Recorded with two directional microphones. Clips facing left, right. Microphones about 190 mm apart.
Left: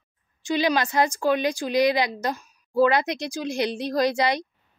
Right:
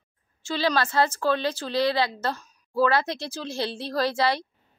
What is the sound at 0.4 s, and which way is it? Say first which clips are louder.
Speech: left 2 dB; 15° left (ahead or behind).